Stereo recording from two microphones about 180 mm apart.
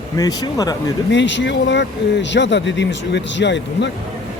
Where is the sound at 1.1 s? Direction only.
80° left.